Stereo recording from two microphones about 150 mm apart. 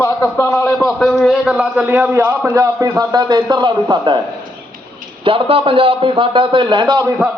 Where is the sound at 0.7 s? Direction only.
5° left (ahead or behind); by 4.2 s 30° right (ahead or behind).